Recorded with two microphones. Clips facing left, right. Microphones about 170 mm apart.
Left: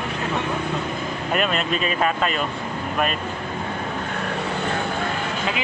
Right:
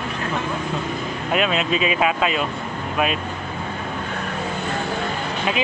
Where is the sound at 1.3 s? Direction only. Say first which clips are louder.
Right 2 dB; centre (ahead or behind).